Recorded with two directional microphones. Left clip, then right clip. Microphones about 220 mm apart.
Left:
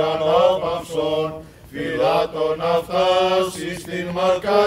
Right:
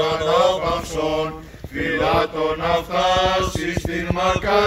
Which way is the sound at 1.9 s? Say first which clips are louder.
Even; 50° left (ahead or behind).